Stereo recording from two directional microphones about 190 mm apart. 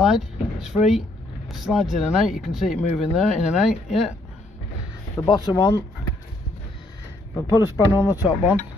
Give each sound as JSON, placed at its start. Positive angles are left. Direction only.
{"t": 0.0, "sound": "speech", "side_deg": 0}
{"t": 5.1, "sound": "speech", "side_deg": 20}
{"t": 7.3, "sound": "speech", "side_deg": 20}
{"t": 7.9, "sound": "speech", "side_deg": -10}